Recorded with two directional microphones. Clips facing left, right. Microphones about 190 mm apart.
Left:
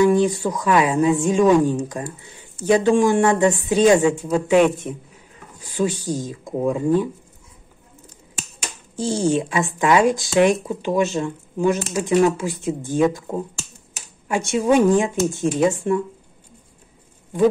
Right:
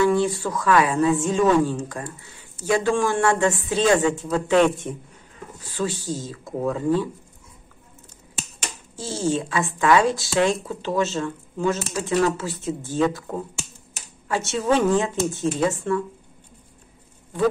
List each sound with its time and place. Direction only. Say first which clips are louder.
0.0 s speech: left 4 dB; 15° left (ahead or behind)
8.9 s speech: left 5 dB; 15° left (ahead or behind)